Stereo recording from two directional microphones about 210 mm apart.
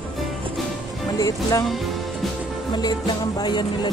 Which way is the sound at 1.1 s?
15° left (ahead or behind).